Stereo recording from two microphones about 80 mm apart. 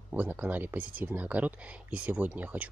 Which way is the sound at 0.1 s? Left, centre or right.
Right.